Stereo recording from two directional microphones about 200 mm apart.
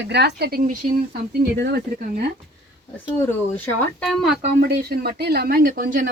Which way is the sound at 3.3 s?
10° left (ahead or behind).